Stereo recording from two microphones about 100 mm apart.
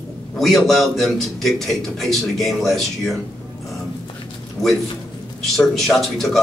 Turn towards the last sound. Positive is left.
turn(degrees=0)  # may be behind; listen again after turning